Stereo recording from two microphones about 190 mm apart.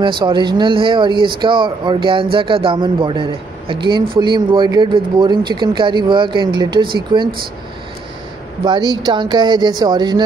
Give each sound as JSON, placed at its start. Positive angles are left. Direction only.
{"t": 0.0, "sound": "speech", "side_deg": -25}
{"t": 8.6, "sound": "speech", "side_deg": -25}